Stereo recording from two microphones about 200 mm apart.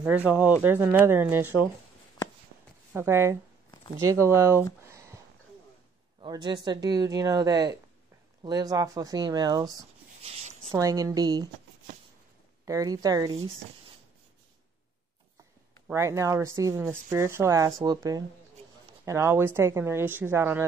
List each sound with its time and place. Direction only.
0.0 s speech: 5° right (ahead or behind)
2.9 s speech: 10° right (ahead or behind)
4.8 s a sound: 15° right (ahead or behind)
6.2 s speech: 20° right (ahead or behind)
10.2 s a sound: 30° right (ahead or behind)
10.7 s speech: 15° right (ahead or behind)
12.6 s speech: 15° right (ahead or behind)
15.9 s speech: 15° right (ahead or behind)